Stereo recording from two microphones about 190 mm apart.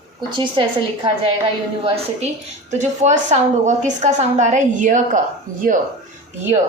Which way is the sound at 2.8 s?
35° right (ahead or behind).